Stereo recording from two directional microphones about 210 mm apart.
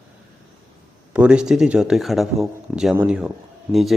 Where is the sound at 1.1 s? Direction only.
5° right (ahead or behind).